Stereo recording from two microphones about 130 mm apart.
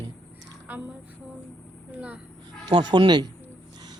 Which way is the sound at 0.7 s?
15° right (ahead or behind).